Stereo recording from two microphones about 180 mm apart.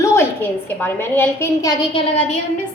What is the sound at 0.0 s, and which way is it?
A woman's voice, 15° left (ahead or behind).